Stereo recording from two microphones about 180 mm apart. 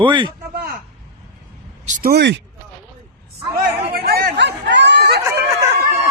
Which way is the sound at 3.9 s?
60° right (ahead or behind).